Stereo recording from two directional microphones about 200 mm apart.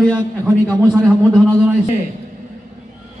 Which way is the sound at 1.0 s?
5° right (ahead or behind).